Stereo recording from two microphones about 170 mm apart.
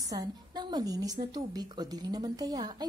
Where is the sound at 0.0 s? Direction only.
20° right (ahead or behind).